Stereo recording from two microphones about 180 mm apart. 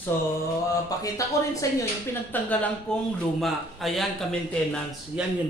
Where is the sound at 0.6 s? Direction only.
20° left (ahead or behind).